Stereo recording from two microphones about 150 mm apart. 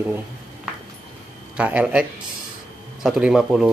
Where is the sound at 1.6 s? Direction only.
10° right (ahead or behind).